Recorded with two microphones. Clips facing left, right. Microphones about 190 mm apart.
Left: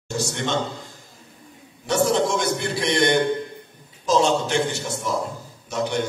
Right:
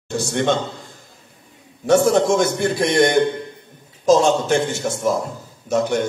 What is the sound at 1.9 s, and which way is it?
A man's voice, 50° right (ahead or behind).